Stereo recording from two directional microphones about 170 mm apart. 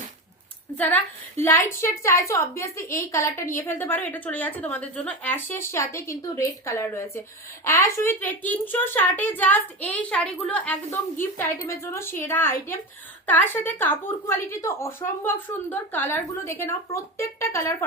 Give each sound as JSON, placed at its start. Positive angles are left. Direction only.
{"t": 0.8, "sound": "a woman's voice", "side_deg": 10}